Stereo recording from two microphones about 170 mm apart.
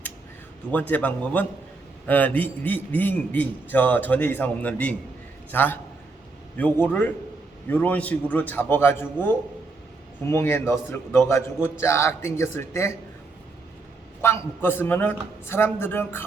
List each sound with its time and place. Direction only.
0.7 s a man's voice: 10° left (ahead or behind)
14.2 s a man's voice: 15° left (ahead or behind)